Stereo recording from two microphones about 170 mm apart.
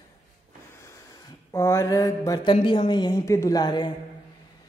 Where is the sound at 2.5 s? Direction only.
35° left (ahead or behind).